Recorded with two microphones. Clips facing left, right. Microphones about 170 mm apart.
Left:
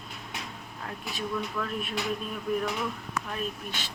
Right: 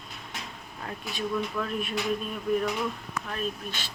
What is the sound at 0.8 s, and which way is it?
A woman's voice, centre (ahead or behind).